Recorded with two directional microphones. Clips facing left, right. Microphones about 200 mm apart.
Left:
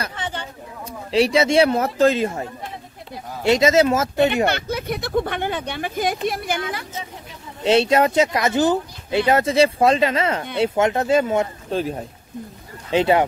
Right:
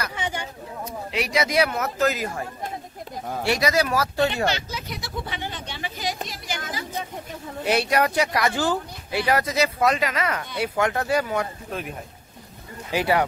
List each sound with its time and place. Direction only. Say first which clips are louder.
0.1 s chatter: even; 10° right (ahead or behind)
1.1 s speech: left 7 dB; 30° left (ahead or behind)
3.4 s speech: left 7 dB; 25° left (ahead or behind)
4.5 s speech: left 5 dB; 55° left (ahead or behind)
7.6 s speech: left 6 dB; 25° left (ahead or behind)